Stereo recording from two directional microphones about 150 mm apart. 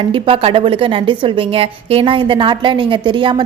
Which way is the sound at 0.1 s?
35° right (ahead or behind).